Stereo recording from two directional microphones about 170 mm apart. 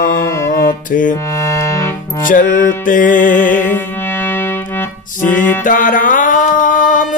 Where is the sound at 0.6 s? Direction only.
50° left (ahead or behind).